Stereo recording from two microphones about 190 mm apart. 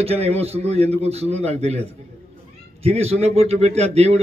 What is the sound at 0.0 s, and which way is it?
A man's voice, 30° right (ahead or behind).